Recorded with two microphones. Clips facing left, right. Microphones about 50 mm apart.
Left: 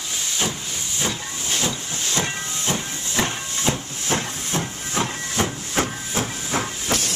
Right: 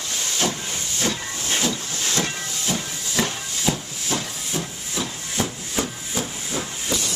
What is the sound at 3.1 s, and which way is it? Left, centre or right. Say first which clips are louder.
Hiss: left 1 dB; left.